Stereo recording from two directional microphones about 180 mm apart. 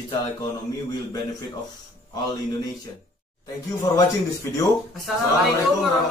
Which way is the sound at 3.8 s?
20° left (ahead or behind).